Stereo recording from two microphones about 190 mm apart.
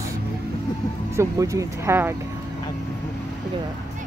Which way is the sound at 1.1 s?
15° right (ahead or behind).